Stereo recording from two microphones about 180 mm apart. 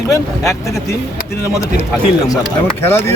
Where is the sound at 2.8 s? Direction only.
10° left (ahead or behind).